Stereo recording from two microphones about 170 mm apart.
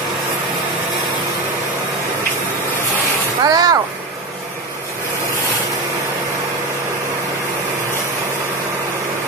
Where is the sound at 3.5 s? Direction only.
20° right (ahead or behind).